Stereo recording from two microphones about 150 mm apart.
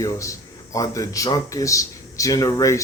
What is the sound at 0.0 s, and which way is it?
Speech, 20° left (ahead or behind).